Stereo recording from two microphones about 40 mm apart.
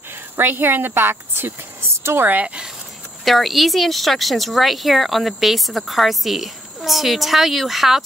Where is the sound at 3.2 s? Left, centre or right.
Centre.